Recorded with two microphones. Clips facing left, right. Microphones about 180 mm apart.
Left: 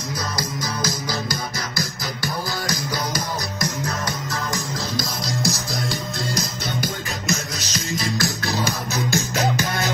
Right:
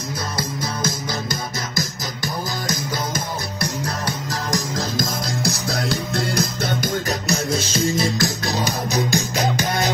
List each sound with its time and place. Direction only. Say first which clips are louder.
0.4 s music: right 4 dB; 25° right (ahead or behind)
3.8 s music: right 1 dB; 35° right (ahead or behind)
4.9 s music: right 2 dB; 50° right (ahead or behind)
7.5 s music: right 8 dB; 25° right (ahead or behind)